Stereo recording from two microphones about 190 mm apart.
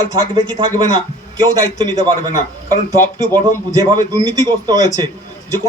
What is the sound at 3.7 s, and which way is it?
A man's voice, 20° right (ahead or behind).